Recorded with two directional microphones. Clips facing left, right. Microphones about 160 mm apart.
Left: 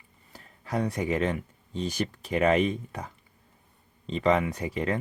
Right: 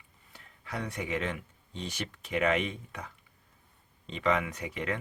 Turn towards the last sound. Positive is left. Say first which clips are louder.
# left 6 dB
turn(degrees=35)  # may be behind; listen again after turning